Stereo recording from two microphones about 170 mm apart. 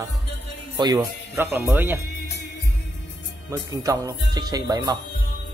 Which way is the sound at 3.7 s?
20° right (ahead or behind).